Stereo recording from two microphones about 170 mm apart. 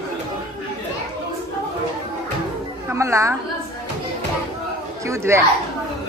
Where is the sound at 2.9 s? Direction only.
15° right (ahead or behind).